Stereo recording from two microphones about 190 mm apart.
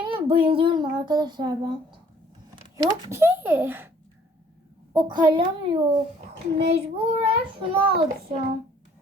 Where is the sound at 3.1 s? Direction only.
15° right (ahead or behind).